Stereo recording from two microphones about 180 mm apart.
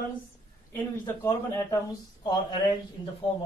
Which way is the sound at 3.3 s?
25° left (ahead or behind).